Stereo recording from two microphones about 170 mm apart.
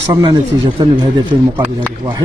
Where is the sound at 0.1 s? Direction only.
25° right (ahead or behind).